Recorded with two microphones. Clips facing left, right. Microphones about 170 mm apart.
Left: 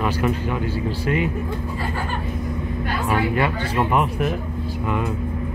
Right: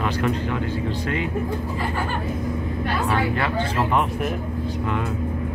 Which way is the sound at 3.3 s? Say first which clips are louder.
Left 2 dB; 10° left (ahead or behind).